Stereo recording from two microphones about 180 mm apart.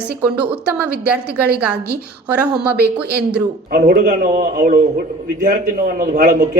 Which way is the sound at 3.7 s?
55° right (ahead or behind).